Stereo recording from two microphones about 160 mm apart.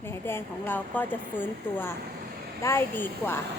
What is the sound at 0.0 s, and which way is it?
A woman's voice, 15° left (ahead or behind).